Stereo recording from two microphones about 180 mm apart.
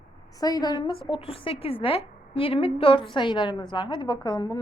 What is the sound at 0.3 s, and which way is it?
Speech, 20° left (ahead or behind).